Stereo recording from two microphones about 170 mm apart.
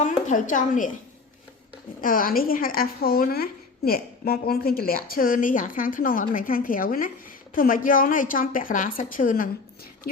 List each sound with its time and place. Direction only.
0.3 s a woman's voice: 50° left (ahead or behind)
2.0 s a woman's voice: 55° left (ahead or behind)